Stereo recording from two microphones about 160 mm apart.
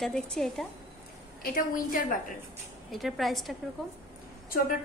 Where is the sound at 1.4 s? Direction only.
60° left (ahead or behind).